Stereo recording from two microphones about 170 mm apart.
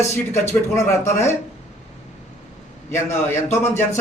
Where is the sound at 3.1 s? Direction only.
15° left (ahead or behind).